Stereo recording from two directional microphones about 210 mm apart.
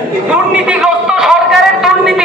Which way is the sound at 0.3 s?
5° right (ahead or behind).